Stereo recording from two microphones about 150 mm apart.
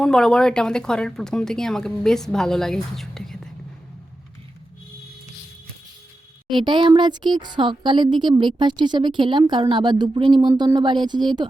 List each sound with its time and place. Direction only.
0.0 s a woman's voice: 5° left (ahead or behind)
6.5 s speech: 30° right (ahead or behind)